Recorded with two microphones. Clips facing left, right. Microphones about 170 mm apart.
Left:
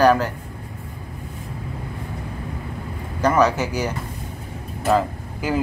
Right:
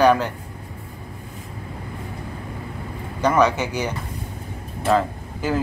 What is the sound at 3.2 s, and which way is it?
Speech, 5° left (ahead or behind).